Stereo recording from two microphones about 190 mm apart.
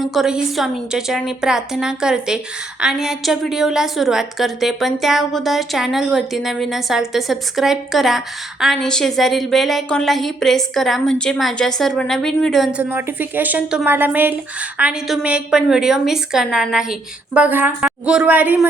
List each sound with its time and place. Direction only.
0.0 s a woman's voice: centre (ahead or behind)